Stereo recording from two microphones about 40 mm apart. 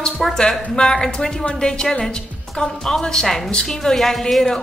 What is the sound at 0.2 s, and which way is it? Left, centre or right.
A woman's voice, centre.